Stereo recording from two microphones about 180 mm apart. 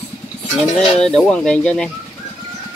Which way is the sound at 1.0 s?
5° left (ahead or behind).